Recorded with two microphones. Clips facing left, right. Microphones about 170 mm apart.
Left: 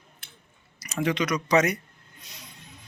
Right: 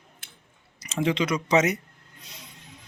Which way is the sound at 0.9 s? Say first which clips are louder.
Right 1 dB; 25° right (ahead or behind).